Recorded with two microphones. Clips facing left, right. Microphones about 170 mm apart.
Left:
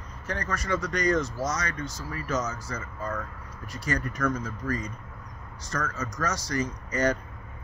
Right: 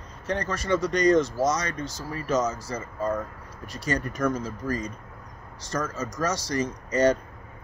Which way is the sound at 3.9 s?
20° right (ahead or behind).